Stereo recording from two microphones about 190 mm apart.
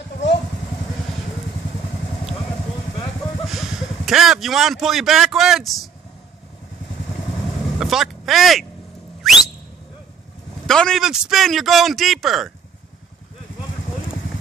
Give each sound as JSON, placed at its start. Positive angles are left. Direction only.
{"t": 0.2, "sound": "vehicle", "side_deg": 70}
{"t": 3.4, "sound": "speech", "side_deg": 0}
{"t": 7.6, "sound": "vehicle", "side_deg": 0}
{"t": 9.2, "sound": "whistle", "side_deg": 0}
{"t": 10.7, "sound": "a man's voice", "side_deg": 5}